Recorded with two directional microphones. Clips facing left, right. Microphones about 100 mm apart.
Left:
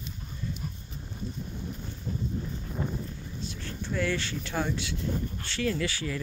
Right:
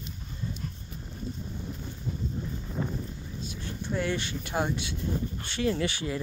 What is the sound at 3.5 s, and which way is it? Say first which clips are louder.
Speech: right 2 dB; 15° right (ahead or behind).